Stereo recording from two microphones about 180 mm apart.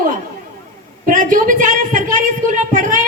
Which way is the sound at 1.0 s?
45° right (ahead or behind).